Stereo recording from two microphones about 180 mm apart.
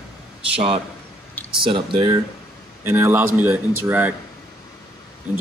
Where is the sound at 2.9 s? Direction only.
15° right (ahead or behind).